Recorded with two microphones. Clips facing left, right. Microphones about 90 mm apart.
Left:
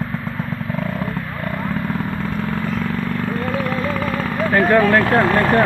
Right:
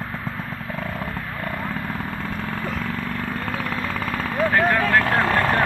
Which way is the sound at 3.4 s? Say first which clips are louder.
Left 6 dB; 15° left (ahead or behind).